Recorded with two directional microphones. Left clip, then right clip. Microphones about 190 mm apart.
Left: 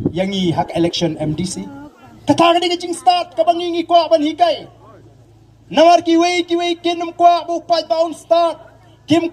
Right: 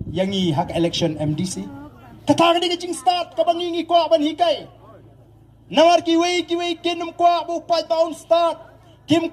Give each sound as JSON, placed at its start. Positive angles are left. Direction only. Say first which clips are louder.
{"t": 0.1, "sound": "a man's voice", "louder": "left 3 dB", "side_deg": -25}
{"t": 5.7, "sound": "a man's voice", "louder": "left 4 dB", "side_deg": -25}